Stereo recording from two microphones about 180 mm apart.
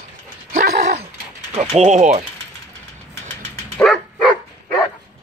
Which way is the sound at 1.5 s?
40° right (ahead or behind).